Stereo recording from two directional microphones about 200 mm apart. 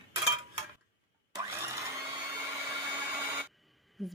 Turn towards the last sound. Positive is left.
turn(degrees=0)  # may be behind; listen again after turning